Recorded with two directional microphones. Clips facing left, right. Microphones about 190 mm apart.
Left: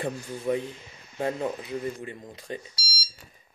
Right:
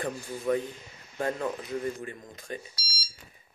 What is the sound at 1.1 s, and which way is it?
Speech, 20° left (ahead or behind).